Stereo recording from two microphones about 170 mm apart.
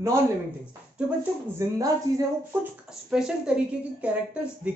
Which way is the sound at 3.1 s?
5° right (ahead or behind).